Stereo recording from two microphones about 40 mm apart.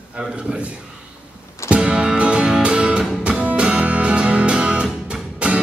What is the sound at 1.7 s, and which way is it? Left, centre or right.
Music, right.